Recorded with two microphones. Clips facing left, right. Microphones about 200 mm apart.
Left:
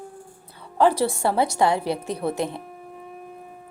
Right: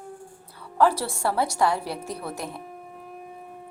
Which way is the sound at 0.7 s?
20° left (ahead or behind).